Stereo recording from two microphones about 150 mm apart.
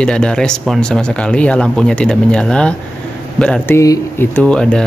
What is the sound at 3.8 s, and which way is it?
Speech, 20° left (ahead or behind).